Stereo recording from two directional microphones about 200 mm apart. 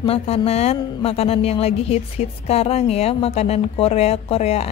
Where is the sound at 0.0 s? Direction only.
30° left (ahead or behind).